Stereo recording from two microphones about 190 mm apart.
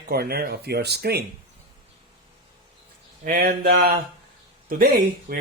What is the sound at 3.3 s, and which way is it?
Speech, 50° right (ahead or behind).